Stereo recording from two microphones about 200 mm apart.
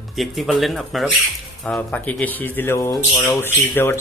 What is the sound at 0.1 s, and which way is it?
Speech, centre (ahead or behind).